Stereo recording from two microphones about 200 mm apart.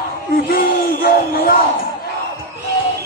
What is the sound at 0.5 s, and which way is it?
Yell, 50° left (ahead or behind).